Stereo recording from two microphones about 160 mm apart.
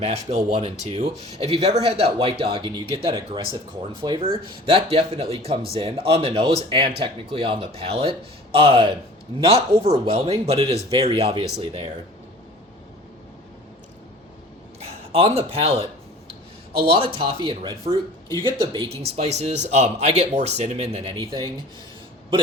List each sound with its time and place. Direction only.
0.0 s a man's voice: 40° right (ahead or behind)
4.6 s a man's voice: 35° right (ahead or behind)
14.8 s a man's voice: 40° right (ahead or behind)